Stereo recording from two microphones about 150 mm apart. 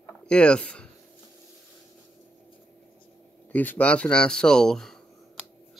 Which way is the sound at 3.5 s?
10° left (ahead or behind).